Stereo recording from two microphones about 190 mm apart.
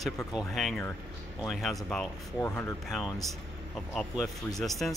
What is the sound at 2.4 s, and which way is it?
Speech, 15° left (ahead or behind).